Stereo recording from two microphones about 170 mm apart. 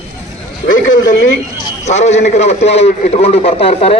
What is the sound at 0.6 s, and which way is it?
A man's voice, 50° left (ahead or behind).